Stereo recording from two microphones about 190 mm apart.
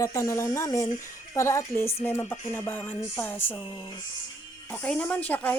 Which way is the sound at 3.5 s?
20° left (ahead or behind).